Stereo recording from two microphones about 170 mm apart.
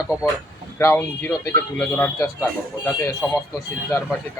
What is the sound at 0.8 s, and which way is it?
Speech, 15° left (ahead or behind).